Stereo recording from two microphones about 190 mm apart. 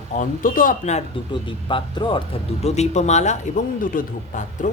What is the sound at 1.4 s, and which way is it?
Speech, 25° left (ahead or behind).